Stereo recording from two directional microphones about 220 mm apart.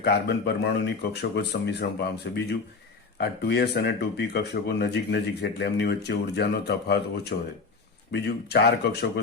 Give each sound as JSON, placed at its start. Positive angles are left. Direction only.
{"t": 0.0, "sound": "speech", "side_deg": 50}